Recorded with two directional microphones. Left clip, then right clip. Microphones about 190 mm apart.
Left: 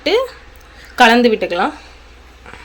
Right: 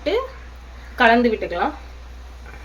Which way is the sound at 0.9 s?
40° left (ahead or behind).